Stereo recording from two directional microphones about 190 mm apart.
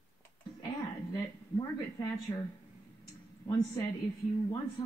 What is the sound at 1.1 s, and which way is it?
Speech, 20° left (ahead or behind).